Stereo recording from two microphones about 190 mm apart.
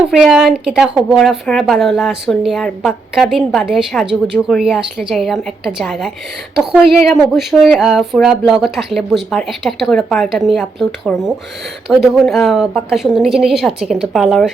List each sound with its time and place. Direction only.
0.1 s speech: centre (ahead or behind)